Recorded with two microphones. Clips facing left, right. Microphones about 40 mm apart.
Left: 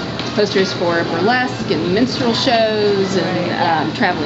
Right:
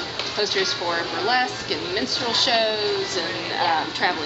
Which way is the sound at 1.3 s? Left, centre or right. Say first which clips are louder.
Left 6 dB; centre.